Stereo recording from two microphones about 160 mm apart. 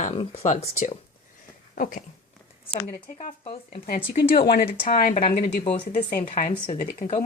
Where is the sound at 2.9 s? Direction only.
60° left (ahead or behind).